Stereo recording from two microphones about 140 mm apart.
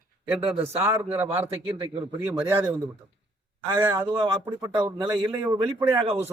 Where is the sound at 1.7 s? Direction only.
35° right (ahead or behind).